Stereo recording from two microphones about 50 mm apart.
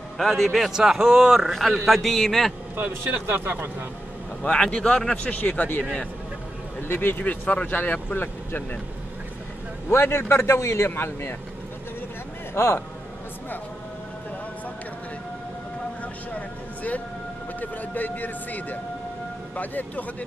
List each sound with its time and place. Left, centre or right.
0.2 s a man's voice: centre
2.7 s speech: right
4.4 s speech: left
6.9 s a man's voice: left
9.8 s a man's voice: left
11.0 s speech: left
12.5 s a man's voice: left
16.3 s a man's voice: left